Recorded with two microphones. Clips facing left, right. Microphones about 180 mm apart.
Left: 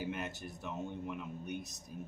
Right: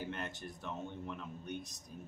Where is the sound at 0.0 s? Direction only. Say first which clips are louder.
Left 2 dB; 10° left (ahead or behind).